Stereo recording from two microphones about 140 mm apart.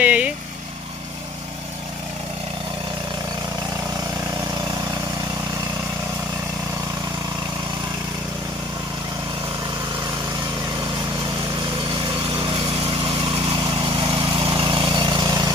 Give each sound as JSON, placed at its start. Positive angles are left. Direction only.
{"t": 0.0, "sound": "vehicle", "side_deg": -10}
{"t": 12.4, "sound": "lawn mower", "side_deg": -35}